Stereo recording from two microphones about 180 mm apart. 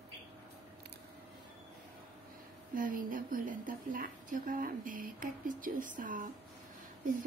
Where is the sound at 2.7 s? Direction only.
50° right (ahead or behind).